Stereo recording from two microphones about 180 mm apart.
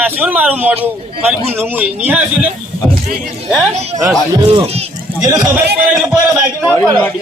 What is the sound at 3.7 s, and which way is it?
Speech, 35° right (ahead or behind).